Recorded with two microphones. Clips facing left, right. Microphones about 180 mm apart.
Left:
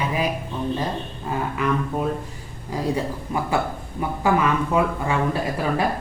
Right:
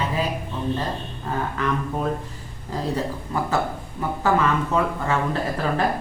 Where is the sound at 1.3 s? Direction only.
10° left (ahead or behind).